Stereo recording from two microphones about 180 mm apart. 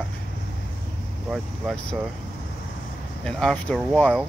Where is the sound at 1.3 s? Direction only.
5° left (ahead or behind).